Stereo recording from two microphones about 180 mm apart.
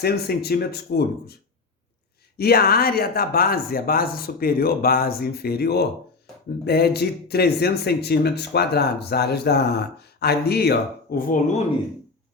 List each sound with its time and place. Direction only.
0.0 s speech: 60° left (ahead or behind)
2.4 s speech: 60° left (ahead or behind)